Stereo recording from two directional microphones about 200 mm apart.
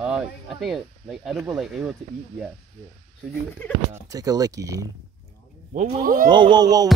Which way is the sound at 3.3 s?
5° left (ahead or behind).